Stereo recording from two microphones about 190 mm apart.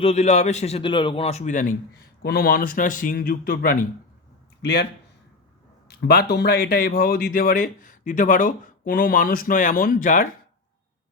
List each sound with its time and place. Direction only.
0.0 s a man's voice: 35° left (ahead or behind)
2.2 s speech: 55° left (ahead or behind)
4.6 s a man's voice: 60° left (ahead or behind)
5.9 s speech: 55° left (ahead or behind)